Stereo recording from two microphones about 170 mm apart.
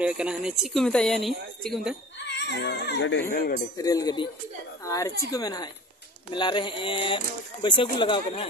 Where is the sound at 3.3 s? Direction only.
60° left (ahead or behind).